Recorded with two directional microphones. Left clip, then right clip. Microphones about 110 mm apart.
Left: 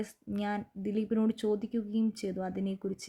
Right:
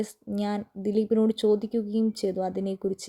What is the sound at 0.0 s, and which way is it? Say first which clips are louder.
Speech: right 6 dB; 30° right (ahead or behind).